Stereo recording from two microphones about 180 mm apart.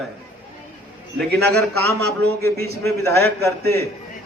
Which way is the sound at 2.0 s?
60° right (ahead or behind).